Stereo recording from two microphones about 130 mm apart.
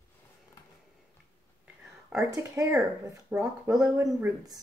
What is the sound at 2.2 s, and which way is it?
Speech, 20° right (ahead or behind).